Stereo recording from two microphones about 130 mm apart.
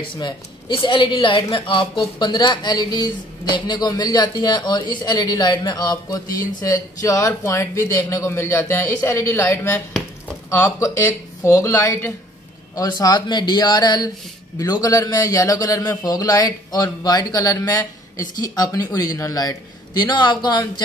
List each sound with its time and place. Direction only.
0.0 s a man's voice: 40° left (ahead or behind)